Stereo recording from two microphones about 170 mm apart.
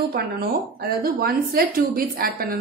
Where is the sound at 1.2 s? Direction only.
60° right (ahead or behind).